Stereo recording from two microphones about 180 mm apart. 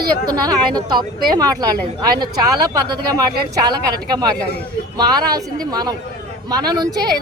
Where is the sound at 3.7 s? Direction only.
20° right (ahead or behind).